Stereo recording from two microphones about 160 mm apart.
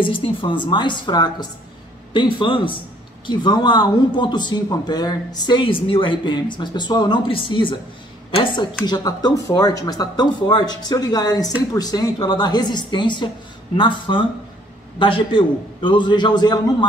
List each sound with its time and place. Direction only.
0.0 s a man's voice: 30° left (ahead or behind)
8.8 s a man's voice: 25° left (ahead or behind)